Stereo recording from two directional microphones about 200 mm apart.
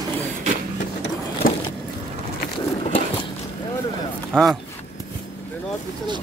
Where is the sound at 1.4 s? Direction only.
45° left (ahead or behind).